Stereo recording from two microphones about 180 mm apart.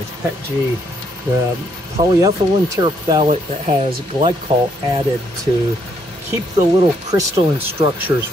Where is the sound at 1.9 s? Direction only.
20° right (ahead or behind).